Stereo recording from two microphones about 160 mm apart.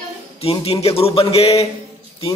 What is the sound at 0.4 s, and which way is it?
A man's voice, 40° left (ahead or behind).